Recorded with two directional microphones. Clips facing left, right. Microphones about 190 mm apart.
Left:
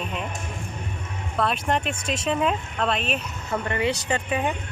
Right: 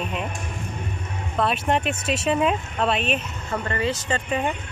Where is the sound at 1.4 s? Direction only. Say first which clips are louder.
Right 2 dB; 5° right (ahead or behind).